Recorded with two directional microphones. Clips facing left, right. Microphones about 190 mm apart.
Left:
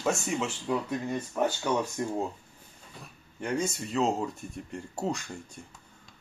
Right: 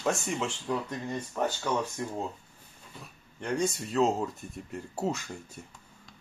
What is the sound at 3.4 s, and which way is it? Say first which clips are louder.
Speech: right 1 dB; centre (ahead or behind).